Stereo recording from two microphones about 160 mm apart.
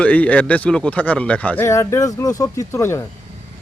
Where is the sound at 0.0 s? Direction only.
10° left (ahead or behind).